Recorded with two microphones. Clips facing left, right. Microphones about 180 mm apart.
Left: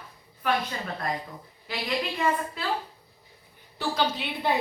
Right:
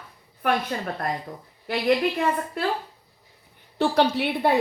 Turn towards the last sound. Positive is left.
turn(degrees=-60)  # may be behind; listen again after turning